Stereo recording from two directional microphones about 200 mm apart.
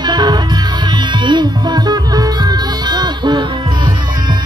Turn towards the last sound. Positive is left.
turn(degrees=-20)  # may be behind; listen again after turning